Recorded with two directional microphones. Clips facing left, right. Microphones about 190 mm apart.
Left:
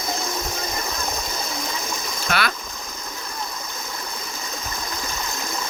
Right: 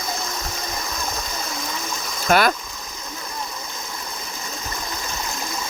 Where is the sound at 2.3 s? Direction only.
45° right (ahead or behind).